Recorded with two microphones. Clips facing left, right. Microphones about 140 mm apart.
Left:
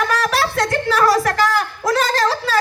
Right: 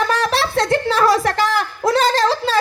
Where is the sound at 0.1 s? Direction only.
25° right (ahead or behind).